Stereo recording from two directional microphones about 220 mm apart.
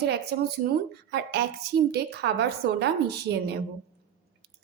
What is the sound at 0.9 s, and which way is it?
A woman's voice, 50° right (ahead or behind).